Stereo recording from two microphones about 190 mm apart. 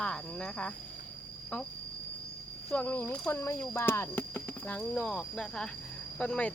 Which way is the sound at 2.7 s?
10° left (ahead or behind).